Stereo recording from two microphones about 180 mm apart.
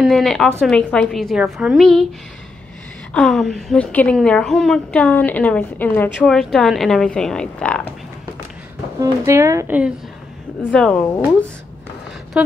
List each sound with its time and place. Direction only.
0.0 s a woman's voice: centre (ahead or behind)
3.1 s a woman's voice: 5° left (ahead or behind)
9.0 s speech: 15° right (ahead or behind)
10.6 s speech: 5° left (ahead or behind)
12.4 s speech: 5° right (ahead or behind)